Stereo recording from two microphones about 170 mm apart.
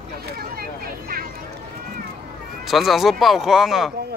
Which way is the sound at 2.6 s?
Centre (ahead or behind).